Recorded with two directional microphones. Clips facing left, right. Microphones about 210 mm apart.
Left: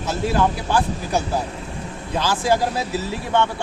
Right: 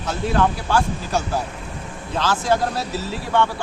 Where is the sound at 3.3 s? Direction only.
25° left (ahead or behind).